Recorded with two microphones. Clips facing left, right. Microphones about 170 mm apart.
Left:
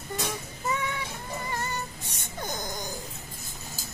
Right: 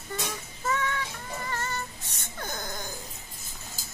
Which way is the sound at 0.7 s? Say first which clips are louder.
Right 1 dB; 15° left (ahead or behind).